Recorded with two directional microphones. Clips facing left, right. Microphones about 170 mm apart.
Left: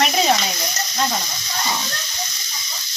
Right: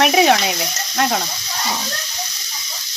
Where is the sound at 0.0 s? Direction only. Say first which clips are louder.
Right 5 dB; 65° right (ahead or behind).